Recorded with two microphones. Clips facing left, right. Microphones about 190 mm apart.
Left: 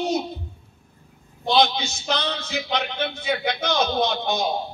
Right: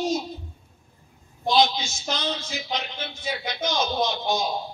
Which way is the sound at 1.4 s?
65° left (ahead or behind).